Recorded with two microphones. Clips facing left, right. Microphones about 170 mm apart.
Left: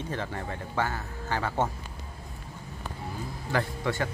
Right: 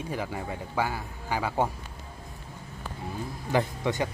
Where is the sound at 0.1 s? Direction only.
10° right (ahead or behind).